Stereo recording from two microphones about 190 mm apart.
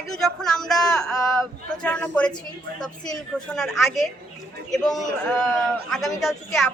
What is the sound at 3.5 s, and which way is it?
Speech, centre (ahead or behind).